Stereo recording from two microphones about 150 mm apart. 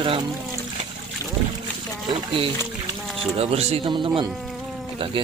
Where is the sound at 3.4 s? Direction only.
40° right (ahead or behind).